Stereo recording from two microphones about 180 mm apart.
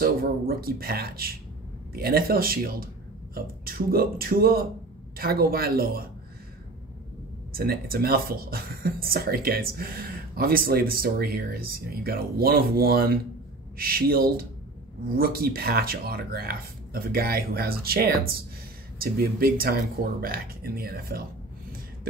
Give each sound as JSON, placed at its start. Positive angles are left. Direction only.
{"t": 0.0, "sound": "speech", "side_deg": -55}
{"t": 7.5, "sound": "speech", "side_deg": -55}